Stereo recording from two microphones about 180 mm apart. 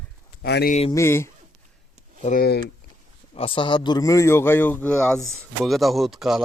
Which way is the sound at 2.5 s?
65° left (ahead or behind).